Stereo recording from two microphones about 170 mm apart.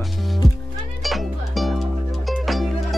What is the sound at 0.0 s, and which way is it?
Music, centre (ahead or behind).